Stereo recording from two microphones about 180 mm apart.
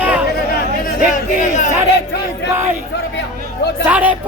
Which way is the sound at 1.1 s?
45° left (ahead or behind).